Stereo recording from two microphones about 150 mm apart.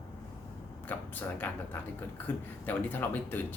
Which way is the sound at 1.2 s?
10° left (ahead or behind).